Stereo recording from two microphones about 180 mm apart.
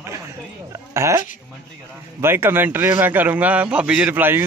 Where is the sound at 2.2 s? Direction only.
10° right (ahead or behind).